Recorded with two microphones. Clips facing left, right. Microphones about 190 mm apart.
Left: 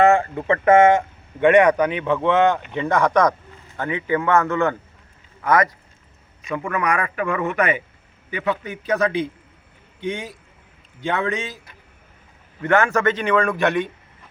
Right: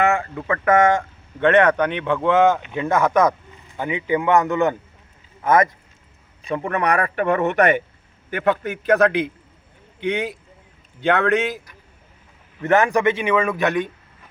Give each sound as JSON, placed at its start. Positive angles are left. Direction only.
{"t": 0.0, "sound": "a man's voice", "side_deg": 35}
{"t": 8.4, "sound": "a man's voice", "side_deg": -60}
{"t": 12.6, "sound": "a man's voice", "side_deg": -20}